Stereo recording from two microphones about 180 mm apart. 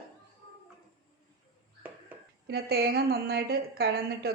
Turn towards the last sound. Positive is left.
turn(degrees=-65)  # may be behind; listen again after turning